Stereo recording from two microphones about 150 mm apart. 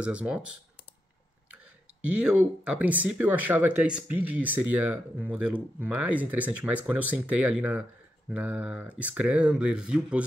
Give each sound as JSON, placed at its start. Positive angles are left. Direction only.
{"t": 0.0, "sound": "speech", "side_deg": -10}